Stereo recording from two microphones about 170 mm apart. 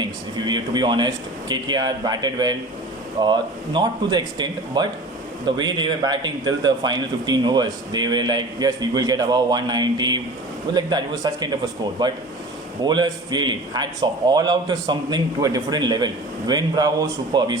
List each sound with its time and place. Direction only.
0.0 s a man's voice: 25° right (ahead or behind)